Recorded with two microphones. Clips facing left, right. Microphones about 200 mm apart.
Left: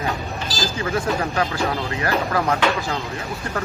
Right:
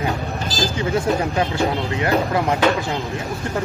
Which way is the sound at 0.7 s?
20° right (ahead or behind).